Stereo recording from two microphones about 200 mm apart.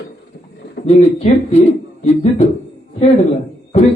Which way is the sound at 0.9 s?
30° left (ahead or behind).